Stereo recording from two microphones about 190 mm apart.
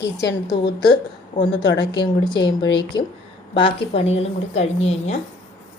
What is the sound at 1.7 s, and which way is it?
A woman's voice, 25° left (ahead or behind).